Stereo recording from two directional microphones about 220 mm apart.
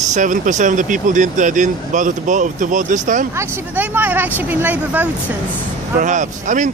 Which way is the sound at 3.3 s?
10° right (ahead or behind).